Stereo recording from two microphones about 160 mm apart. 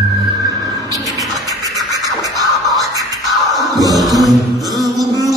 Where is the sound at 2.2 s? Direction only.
25° right (ahead or behind).